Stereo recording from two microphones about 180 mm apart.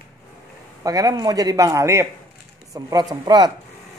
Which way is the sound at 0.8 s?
20° right (ahead or behind).